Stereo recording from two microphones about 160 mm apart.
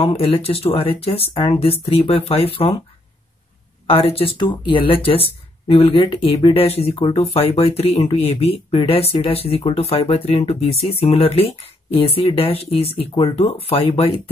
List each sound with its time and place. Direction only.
0.0 s speech: 40° left (ahead or behind)
3.9 s speech: 35° left (ahead or behind)